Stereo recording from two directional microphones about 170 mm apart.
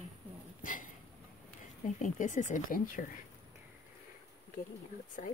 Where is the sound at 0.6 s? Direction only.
50° left (ahead or behind).